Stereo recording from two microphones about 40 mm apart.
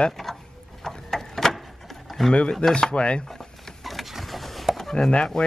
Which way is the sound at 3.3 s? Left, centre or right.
Centre.